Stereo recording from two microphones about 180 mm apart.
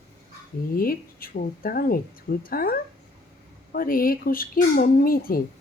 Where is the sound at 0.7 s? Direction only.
55° left (ahead or behind).